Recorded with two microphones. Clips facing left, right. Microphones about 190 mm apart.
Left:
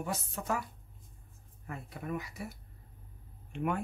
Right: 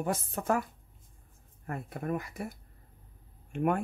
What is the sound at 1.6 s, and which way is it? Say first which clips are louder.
Speech: right 6 dB; 50° right (ahead or behind).